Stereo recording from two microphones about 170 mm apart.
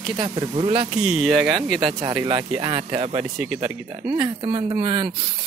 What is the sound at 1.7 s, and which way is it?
Speech, 25° right (ahead or behind).